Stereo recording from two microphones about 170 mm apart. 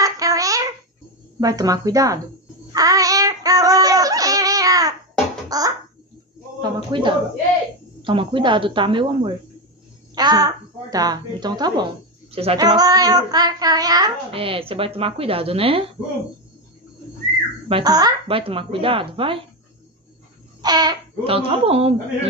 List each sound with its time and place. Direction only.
0.0 s a sound: 20° right (ahead or behind)
1.4 s speech: 20° right (ahead or behind)
2.7 s child singing: 20° right (ahead or behind)
5.5 s a sound: 20° right (ahead or behind)
6.6 s speech: 30° right (ahead or behind)
12.3 s speech: 35° right (ahead or behind)
12.5 s speech: 25° right (ahead or behind)
17.6 s speech: 30° right (ahead or behind)
20.6 s speech: 25° right (ahead or behind)